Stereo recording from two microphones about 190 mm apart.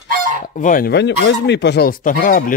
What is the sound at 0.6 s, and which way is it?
Speech, 45° left (ahead or behind).